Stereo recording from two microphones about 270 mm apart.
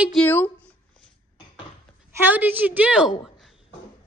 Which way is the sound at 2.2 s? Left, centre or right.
Centre.